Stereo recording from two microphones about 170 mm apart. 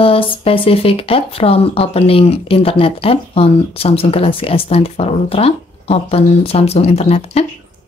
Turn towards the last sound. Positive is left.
turn(degrees=35)  # may be behind; listen again after turning